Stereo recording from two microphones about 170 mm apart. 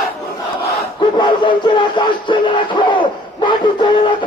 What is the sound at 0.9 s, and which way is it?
Music, 25° left (ahead or behind).